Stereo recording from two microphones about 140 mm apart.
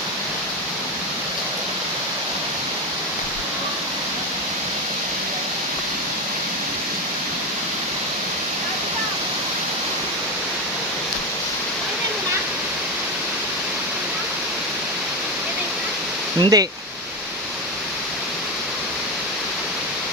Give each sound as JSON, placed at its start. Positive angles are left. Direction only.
{"t": 16.4, "sound": "speech", "side_deg": -25}